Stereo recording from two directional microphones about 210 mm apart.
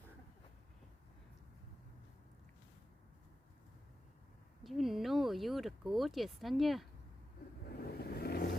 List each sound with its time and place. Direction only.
4.6 s speech: centre (ahead or behind)
7.8 s vehicle: 45° left (ahead or behind)